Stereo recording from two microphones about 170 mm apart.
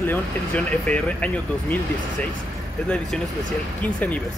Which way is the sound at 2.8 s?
5° left (ahead or behind).